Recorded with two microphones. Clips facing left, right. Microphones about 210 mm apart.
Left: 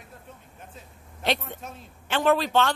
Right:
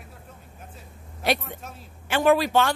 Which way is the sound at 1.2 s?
10° right (ahead or behind).